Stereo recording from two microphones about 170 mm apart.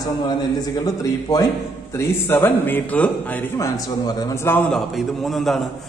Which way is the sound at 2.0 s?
15° left (ahead or behind).